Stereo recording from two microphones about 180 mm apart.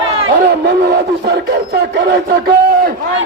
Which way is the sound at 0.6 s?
60° right (ahead or behind).